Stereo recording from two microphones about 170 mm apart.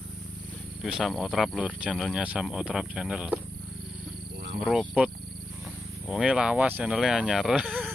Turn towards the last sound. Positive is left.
turn(degrees=0)  # may be behind; listen again after turning